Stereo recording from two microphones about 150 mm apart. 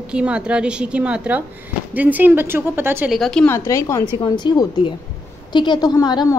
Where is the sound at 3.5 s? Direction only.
20° left (ahead or behind).